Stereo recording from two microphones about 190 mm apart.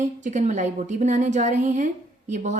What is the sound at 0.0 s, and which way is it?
Speech, 40° right (ahead or behind).